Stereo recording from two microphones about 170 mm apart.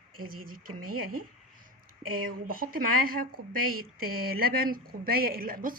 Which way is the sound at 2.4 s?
60° right (ahead or behind).